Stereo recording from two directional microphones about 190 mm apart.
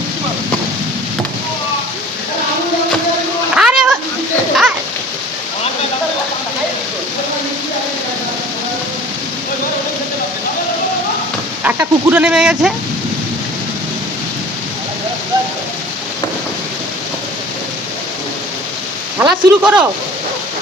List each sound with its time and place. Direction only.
3.5 s a sound: 5° right (ahead or behind)
11.6 s a man's voice: 10° right (ahead or behind)
19.2 s speech: 5° right (ahead or behind)